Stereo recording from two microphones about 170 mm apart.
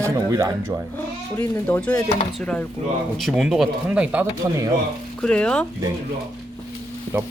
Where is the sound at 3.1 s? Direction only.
Centre (ahead or behind).